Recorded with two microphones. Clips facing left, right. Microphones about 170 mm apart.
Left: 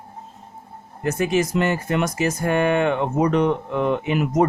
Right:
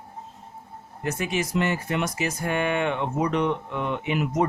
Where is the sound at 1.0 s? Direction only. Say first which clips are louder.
Left 7 dB; 45° left (ahead or behind).